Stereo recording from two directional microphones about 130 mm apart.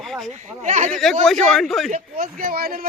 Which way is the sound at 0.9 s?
5° left (ahead or behind).